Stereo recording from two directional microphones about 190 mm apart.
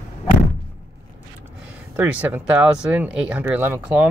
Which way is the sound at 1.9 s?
10° right (ahead or behind).